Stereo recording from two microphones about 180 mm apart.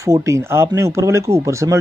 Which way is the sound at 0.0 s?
15° right (ahead or behind).